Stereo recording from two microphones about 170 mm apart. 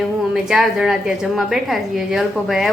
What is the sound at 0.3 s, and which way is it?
A woman's voice, centre (ahead or behind).